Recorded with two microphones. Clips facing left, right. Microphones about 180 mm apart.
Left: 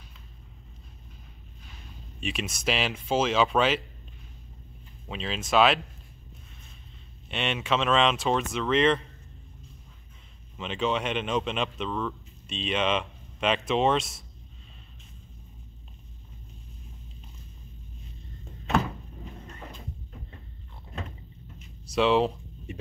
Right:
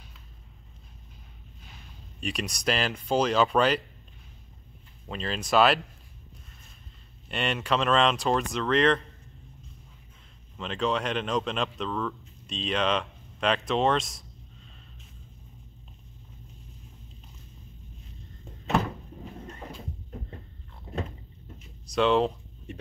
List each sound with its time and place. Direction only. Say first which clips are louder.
2.1 s speech: even; centre (ahead or behind)
5.0 s speech: right 1 dB; centre (ahead or behind)
7.2 s speech: even; centre (ahead or behind)
10.6 s speech: even; centre (ahead or behind)
20.9 s vehicle: right 6 dB; 35° right (ahead or behind)
21.5 s a sound: even; 5° left (ahead or behind)